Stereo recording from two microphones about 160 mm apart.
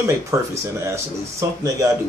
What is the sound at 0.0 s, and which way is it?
Speech, 15° right (ahead or behind).